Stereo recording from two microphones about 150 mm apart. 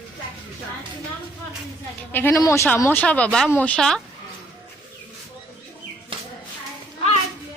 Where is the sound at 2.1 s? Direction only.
15° left (ahead or behind).